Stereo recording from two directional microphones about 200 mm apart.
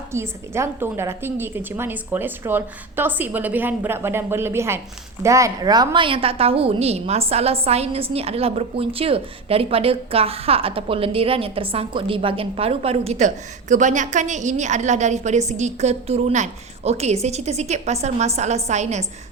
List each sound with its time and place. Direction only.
0.1 s a woman's voice: 15° right (ahead or behind); by 19.0 s 35° right (ahead or behind)